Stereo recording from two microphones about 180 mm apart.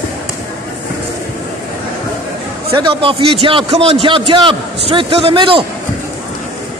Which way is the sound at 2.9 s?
30° right (ahead or behind).